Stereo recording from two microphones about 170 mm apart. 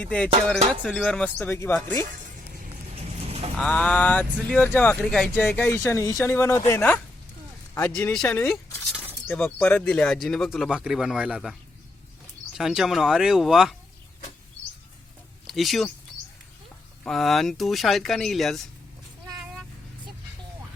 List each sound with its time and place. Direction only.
0.0 s speech: 5° left (ahead or behind)
3.2 s vehicle: 35° right (ahead or behind)
3.6 s speech: 5° left (ahead or behind)
12.5 s speech: 5° right (ahead or behind)
15.4 s speech: centre (ahead or behind)
17.0 s speech: centre (ahead or behind)